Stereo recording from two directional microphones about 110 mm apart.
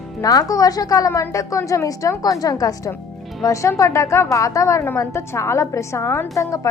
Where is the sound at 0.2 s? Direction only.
35° left (ahead or behind).